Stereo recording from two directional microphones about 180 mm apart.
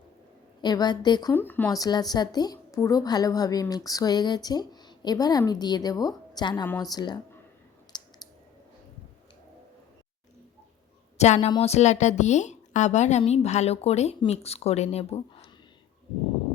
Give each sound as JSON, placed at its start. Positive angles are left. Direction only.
{"t": 0.6, "sound": "speech", "side_deg": 25}
{"t": 1.3, "sound": "speech", "side_deg": 10}
{"t": 7.9, "sound": "clicking", "side_deg": 25}
{"t": 11.2, "sound": "a woman's voice", "side_deg": 40}